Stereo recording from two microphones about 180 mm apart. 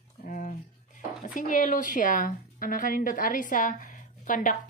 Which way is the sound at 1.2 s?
45° left (ahead or behind).